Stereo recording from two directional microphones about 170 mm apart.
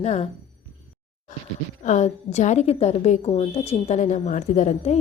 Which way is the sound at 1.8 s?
45° left (ahead or behind).